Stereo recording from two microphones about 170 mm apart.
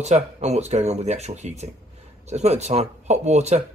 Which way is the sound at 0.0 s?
40° right (ahead or behind).